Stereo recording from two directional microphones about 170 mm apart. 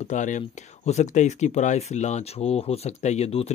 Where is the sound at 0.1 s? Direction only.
45° left (ahead or behind).